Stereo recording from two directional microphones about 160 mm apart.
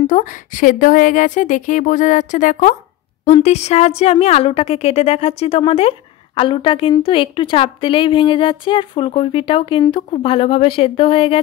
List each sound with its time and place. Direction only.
0.0 s a woman's voice: 55° left (ahead or behind); by 11.4 s 35° left (ahead or behind)